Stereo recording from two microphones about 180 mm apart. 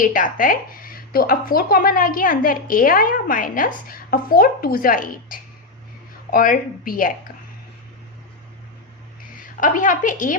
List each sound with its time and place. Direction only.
0.0 s speech: 50° left (ahead or behind)
9.4 s a woman's voice: 50° left (ahead or behind)